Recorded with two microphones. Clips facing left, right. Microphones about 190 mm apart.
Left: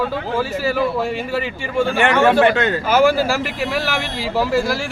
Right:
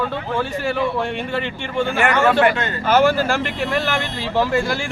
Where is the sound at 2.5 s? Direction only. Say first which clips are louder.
Left 6 dB; 75° left (ahead or behind).